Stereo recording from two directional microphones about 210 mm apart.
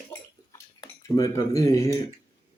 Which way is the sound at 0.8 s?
15° left (ahead or behind).